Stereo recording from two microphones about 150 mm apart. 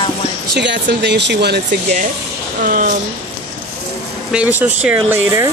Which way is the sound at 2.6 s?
65° right (ahead or behind).